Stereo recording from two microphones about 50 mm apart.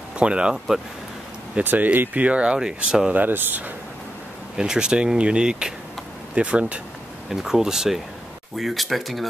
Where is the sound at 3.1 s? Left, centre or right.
Right.